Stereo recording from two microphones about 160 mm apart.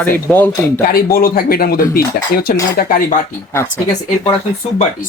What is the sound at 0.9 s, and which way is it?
Speech, 70° left (ahead or behind).